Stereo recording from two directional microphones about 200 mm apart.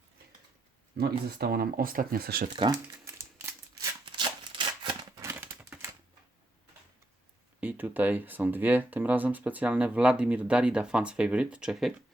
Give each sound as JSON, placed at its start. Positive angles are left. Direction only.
{"t": 0.9, "sound": "speech", "side_deg": -50}
{"t": 3.1, "sound": "a sound", "side_deg": -15}
{"t": 7.6, "sound": "speech", "side_deg": -10}